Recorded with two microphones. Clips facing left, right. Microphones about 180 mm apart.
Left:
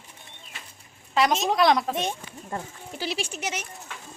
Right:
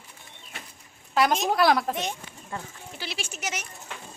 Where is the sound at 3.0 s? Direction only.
35° left (ahead or behind).